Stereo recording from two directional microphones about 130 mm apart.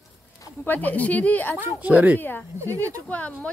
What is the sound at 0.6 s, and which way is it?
Speech, 15° left (ahead or behind).